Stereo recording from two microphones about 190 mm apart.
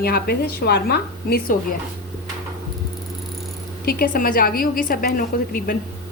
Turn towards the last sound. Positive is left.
turn(degrees=50)  # may be behind; listen again after turning